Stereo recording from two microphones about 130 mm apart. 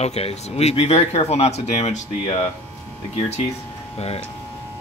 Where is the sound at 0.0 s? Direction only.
55° left (ahead or behind).